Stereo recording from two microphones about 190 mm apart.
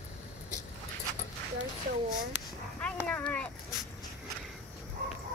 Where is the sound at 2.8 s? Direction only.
5° left (ahead or behind).